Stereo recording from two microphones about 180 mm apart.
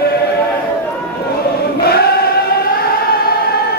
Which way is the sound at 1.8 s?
60° left (ahead or behind).